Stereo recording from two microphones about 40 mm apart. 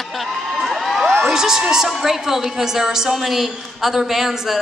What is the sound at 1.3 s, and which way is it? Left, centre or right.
A woman's voice, centre.